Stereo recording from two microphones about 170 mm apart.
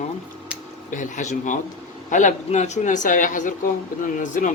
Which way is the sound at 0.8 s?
45° left (ahead or behind).